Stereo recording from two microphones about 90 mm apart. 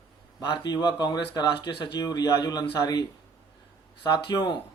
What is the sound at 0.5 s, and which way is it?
Speech, 50° left (ahead or behind).